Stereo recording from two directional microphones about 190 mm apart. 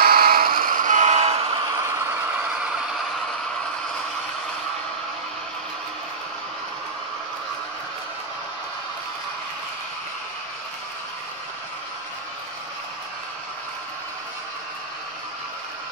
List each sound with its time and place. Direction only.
0.0 s buzzer: 50° right (ahead or behind); by 1.6 s 30° right (ahead or behind)
1.7 s vehicle: 15° right (ahead or behind)